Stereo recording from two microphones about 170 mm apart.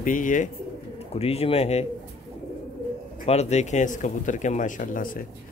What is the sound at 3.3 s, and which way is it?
Speech, 40° left (ahead or behind).